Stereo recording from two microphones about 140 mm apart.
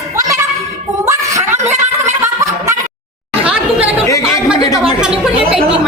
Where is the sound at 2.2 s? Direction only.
20° right (ahead or behind).